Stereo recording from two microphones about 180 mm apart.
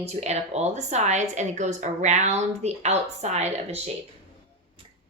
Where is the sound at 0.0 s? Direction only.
35° right (ahead or behind).